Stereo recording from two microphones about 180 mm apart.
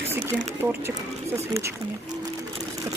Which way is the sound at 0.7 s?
15° right (ahead or behind).